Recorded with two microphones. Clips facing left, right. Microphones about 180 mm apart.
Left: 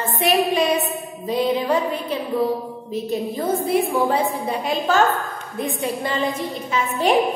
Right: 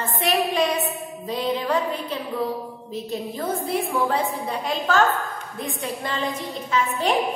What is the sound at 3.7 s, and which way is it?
A woman's voice, 10° left (ahead or behind).